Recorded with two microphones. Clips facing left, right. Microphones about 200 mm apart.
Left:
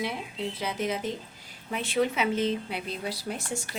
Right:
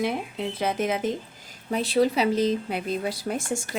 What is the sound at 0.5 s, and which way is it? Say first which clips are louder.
Speech: right 6 dB; 50° right (ahead or behind).